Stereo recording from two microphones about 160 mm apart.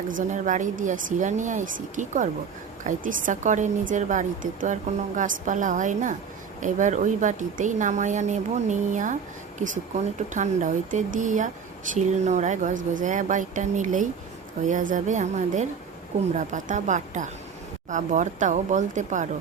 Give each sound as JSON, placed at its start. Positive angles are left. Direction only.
{"t": 0.2, "sound": "a woman's voice", "side_deg": -50}